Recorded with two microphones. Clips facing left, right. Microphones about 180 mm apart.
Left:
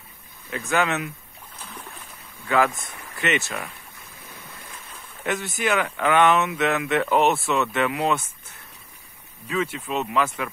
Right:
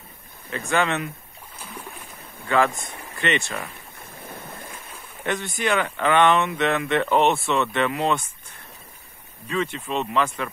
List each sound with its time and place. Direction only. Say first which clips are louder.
0.7 s speech: even; 5° left (ahead or behind)
1.6 s a sound: right 2 dB; 10° right (ahead or behind)
2.4 s speech: even; 5° left (ahead or behind)
4.0 s waves: right 8 dB; 55° right (ahead or behind)
5.2 s speech: even; 5° left (ahead or behind)
9.5 s speech: even; 5° left (ahead or behind)